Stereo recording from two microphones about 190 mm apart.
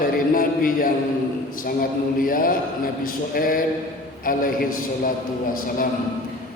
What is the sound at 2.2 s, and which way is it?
A man's voice, 50° left (ahead or behind).